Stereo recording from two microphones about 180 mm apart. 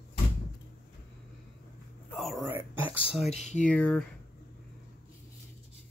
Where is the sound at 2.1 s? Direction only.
Centre (ahead or behind).